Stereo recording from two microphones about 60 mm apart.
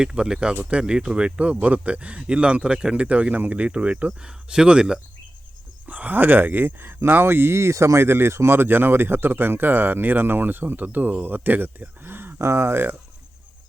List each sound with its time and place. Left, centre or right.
0.0 s speech: centre
0.5 s speech: right
0.8 s speech: centre
5.9 s speech: right